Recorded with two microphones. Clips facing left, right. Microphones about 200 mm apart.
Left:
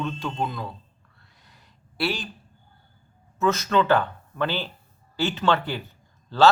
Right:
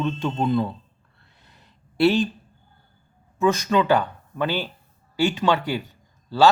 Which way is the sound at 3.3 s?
15° right (ahead or behind).